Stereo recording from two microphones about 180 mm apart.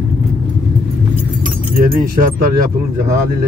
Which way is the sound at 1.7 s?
50° right (ahead or behind).